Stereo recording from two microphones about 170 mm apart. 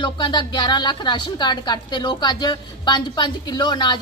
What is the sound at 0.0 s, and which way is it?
A woman's voice, 25° left (ahead or behind).